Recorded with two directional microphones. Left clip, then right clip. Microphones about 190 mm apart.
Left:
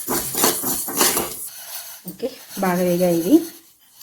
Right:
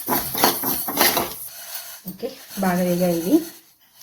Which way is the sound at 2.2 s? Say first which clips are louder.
Left 2 dB; 50° left (ahead or behind).